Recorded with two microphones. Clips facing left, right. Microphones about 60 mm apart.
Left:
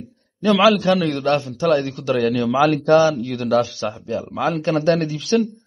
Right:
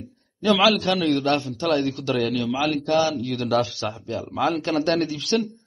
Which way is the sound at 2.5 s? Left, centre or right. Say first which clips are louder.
Left 7 dB; left.